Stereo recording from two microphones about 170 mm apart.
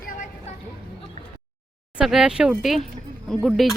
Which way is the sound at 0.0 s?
55° left (ahead or behind).